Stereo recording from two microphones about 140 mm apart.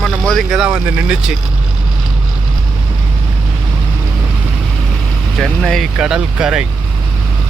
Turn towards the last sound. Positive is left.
turn(degrees=-5)  # may be behind; listen again after turning